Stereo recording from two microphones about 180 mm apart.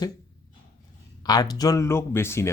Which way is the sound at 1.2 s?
20° left (ahead or behind).